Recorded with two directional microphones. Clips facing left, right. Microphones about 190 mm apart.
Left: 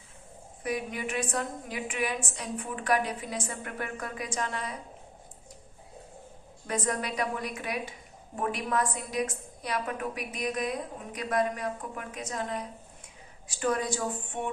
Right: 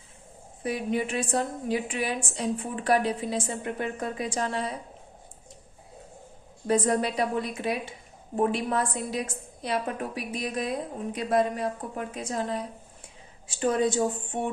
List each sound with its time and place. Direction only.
0.6 s a woman's voice: 30° right (ahead or behind)
6.7 s a woman's voice: 30° right (ahead or behind)